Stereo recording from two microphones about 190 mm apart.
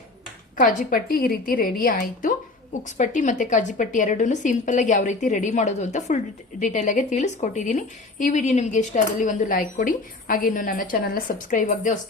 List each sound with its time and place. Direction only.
0.5 s a woman's voice: 40° left (ahead or behind)